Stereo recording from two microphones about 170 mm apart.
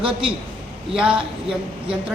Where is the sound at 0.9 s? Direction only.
5° right (ahead or behind).